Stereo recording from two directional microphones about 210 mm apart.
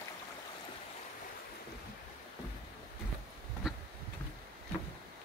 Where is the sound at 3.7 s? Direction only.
5° right (ahead or behind).